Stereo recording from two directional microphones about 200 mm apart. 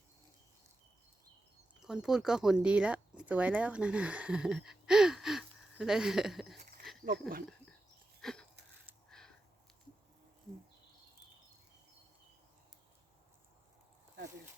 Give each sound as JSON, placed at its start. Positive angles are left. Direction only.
{"t": 1.8, "sound": "speech", "side_deg": 0}
{"t": 7.0, "sound": "speech", "side_deg": -45}
{"t": 8.2, "sound": "a sound", "side_deg": 0}